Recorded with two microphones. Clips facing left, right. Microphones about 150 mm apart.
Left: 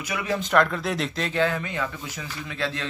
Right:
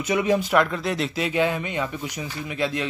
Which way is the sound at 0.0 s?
20° right (ahead or behind).